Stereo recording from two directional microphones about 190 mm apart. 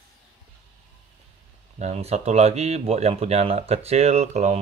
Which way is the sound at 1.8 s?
35° right (ahead or behind).